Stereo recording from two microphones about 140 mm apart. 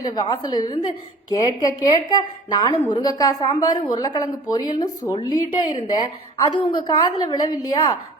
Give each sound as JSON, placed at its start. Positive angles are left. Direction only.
{"t": 0.0, "sound": "a woman's voice", "side_deg": 30}